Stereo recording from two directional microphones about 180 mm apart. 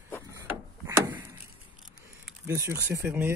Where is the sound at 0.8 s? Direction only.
15° right (ahead or behind).